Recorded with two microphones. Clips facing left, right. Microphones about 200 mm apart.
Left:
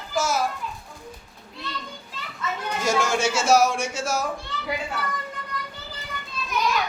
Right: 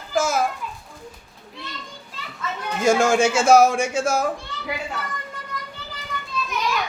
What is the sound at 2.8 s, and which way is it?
Speech, 50° right (ahead or behind).